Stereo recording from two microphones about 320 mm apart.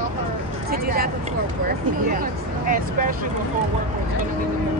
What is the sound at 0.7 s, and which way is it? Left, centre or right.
Speech, right.